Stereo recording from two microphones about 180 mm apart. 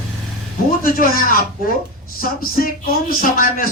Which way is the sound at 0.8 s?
55° left (ahead or behind).